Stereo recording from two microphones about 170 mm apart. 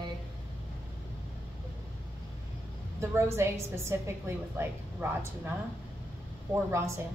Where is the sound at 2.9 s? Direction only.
15° right (ahead or behind).